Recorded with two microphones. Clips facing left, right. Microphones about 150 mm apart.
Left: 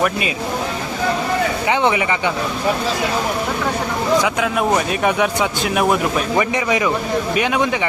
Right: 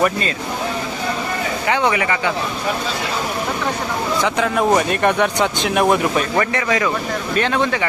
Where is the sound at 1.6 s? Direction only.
20° left (ahead or behind).